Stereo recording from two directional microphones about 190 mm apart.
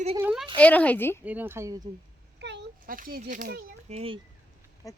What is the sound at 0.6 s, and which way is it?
Speech, 10° left (ahead or behind).